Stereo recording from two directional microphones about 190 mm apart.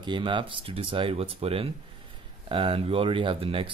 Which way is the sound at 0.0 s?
25° right (ahead or behind).